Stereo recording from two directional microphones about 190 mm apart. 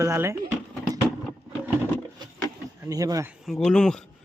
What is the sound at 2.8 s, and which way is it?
Speech, 20° right (ahead or behind).